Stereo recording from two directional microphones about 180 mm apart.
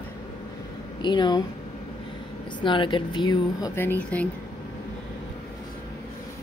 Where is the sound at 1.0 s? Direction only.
25° left (ahead or behind).